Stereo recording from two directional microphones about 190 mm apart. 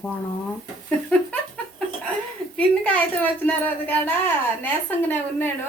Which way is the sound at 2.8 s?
10° left (ahead or behind).